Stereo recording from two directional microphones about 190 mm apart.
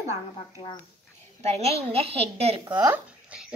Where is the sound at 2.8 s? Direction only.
10° right (ahead or behind).